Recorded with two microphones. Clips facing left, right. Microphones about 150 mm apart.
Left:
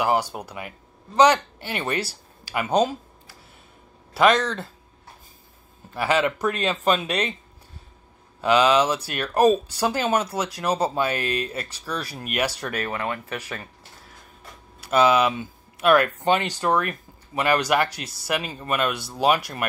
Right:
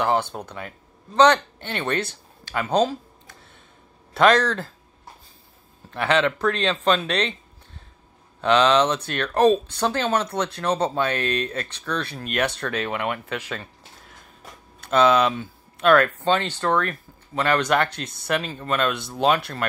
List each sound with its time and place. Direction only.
0.0 s speech: 10° left (ahead or behind)
4.1 s speech: centre (ahead or behind)
5.9 s speech: 5° left (ahead or behind)
8.4 s speech: 5° left (ahead or behind)
12.8 s speech: 20° right (ahead or behind)
13.4 s speech: 10° left (ahead or behind)
14.8 s speech: 5° left (ahead or behind)